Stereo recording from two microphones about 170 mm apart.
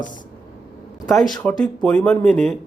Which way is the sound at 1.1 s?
Centre (ahead or behind).